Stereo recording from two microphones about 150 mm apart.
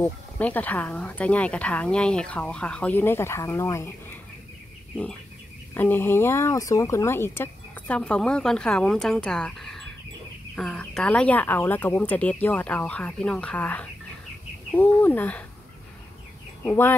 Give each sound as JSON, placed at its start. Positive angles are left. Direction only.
{"t": 0.0, "sound": "speech", "side_deg": 10}
{"t": 5.8, "sound": "speech", "side_deg": 15}
{"t": 16.6, "sound": "speech", "side_deg": 15}